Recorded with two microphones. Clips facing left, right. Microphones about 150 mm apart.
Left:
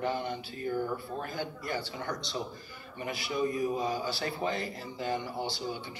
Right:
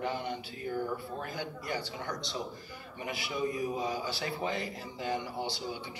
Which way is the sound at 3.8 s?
45° left (ahead or behind).